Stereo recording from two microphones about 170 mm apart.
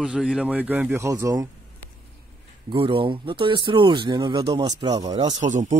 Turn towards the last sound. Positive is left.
turn(degrees=-45)  # may be behind; listen again after turning